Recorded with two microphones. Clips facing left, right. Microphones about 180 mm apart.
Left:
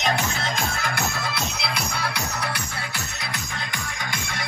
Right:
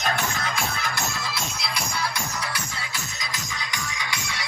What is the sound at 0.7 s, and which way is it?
Music, 55° left (ahead or behind).